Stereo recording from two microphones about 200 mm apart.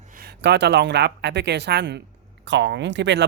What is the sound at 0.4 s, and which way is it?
Speech, 60° right (ahead or behind).